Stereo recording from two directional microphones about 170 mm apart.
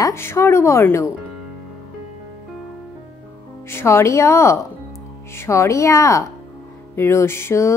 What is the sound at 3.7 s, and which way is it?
A woman's voice, 15° left (ahead or behind).